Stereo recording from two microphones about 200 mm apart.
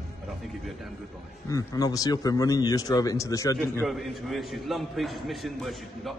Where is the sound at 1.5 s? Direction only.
15° left (ahead or behind).